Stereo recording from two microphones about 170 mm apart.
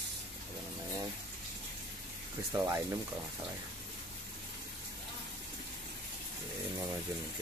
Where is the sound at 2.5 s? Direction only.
15° right (ahead or behind).